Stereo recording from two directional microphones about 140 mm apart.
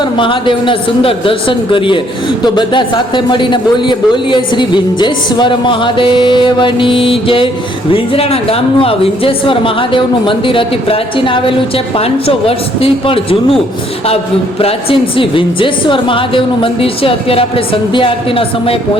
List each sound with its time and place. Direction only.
0.0 s a man's voice: 35° left (ahead or behind)
14.6 s a man's voice: 40° left (ahead or behind)